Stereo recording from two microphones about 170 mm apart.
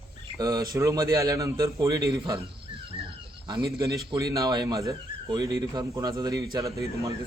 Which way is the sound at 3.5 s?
20° right (ahead or behind).